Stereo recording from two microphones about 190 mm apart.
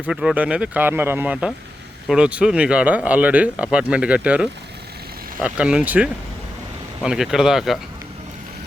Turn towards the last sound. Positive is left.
turn(degrees=0)  # may be behind; listen again after turning